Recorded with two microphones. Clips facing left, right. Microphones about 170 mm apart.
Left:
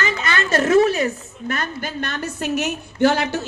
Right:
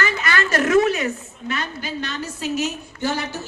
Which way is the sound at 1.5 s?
50° left (ahead or behind).